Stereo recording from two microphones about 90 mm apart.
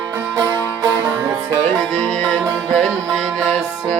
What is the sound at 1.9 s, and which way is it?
Music, 15° left (ahead or behind).